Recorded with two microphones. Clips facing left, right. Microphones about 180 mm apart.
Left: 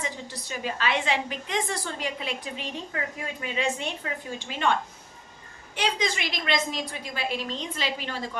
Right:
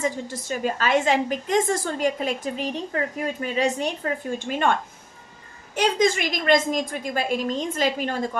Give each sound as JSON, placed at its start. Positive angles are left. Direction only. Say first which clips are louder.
{"t": 0.0, "sound": "a woman's voice", "louder": "right 8 dB", "side_deg": -45}